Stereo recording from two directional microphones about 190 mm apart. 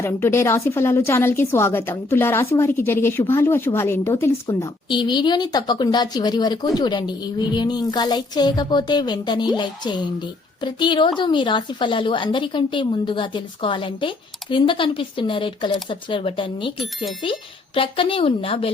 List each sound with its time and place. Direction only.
0.0 s a woman's voice: 15° left (ahead or behind)
17.7 s a woman's voice: 30° left (ahead or behind)